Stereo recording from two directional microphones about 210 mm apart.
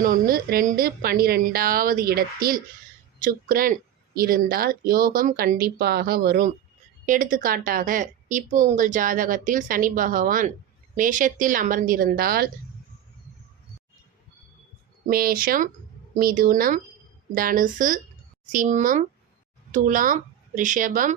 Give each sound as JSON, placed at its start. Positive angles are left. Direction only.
{"t": 0.0, "sound": "a woman's voice", "side_deg": -40}
{"t": 15.0, "sound": "a woman's voice", "side_deg": -45}